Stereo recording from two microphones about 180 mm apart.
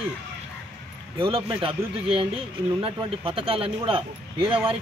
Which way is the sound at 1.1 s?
30° right (ahead or behind).